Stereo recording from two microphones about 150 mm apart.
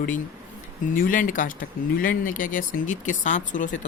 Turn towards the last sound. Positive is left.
turn(degrees=55)  # may be behind; listen again after turning